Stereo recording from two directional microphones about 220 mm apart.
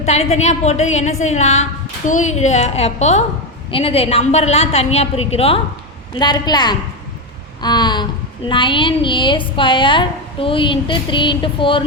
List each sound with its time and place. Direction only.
0.0 s a woman's voice: 30° left (ahead or behind)